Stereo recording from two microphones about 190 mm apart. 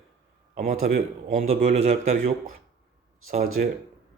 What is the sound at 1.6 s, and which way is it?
Speech, 35° right (ahead or behind).